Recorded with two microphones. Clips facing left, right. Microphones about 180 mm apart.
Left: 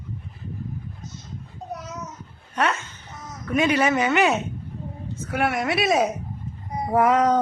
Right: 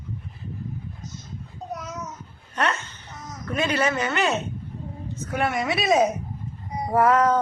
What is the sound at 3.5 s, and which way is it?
Speech, 15° left (ahead or behind).